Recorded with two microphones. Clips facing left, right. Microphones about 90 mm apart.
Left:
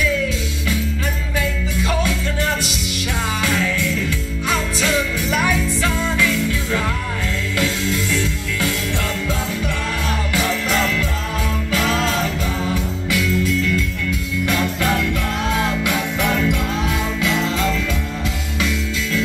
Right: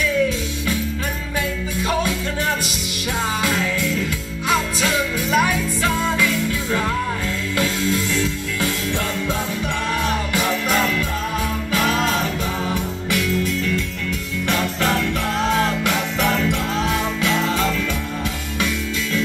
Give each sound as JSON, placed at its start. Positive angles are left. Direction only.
{"t": 5.3, "sound": "music", "side_deg": -30}
{"t": 7.5, "sound": "music", "side_deg": -35}